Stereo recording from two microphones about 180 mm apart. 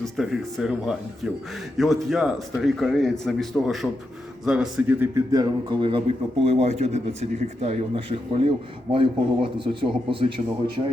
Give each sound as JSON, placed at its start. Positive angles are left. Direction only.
{"t": 0.0, "sound": "a man's voice", "side_deg": 0}